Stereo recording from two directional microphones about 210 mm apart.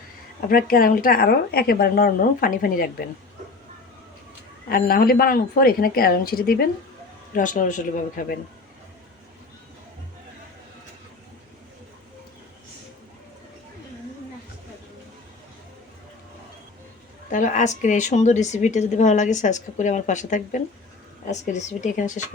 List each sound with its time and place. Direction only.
0.4 s a woman's voice: 40° left (ahead or behind)
4.7 s a woman's voice: 45° left (ahead or behind)
17.3 s speech: 35° left (ahead or behind)